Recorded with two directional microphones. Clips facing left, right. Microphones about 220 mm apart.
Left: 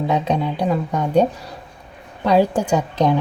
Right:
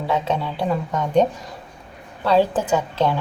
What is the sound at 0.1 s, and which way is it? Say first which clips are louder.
A woman's voice: even; 15° left (ahead or behind).